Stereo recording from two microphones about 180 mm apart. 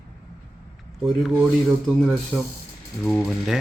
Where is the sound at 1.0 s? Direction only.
5° right (ahead or behind).